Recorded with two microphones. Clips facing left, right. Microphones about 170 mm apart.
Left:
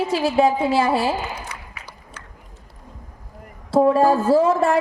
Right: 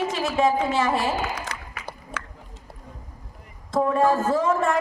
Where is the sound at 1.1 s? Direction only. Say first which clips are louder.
Even; 90° right.